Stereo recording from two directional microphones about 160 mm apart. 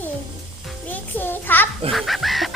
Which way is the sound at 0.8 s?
10° left (ahead or behind).